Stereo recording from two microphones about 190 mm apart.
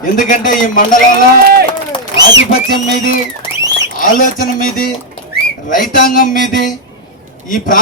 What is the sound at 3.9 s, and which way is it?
A man's voice, 45° left (ahead or behind).